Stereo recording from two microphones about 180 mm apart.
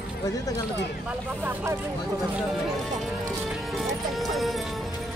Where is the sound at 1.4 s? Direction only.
10° right (ahead or behind).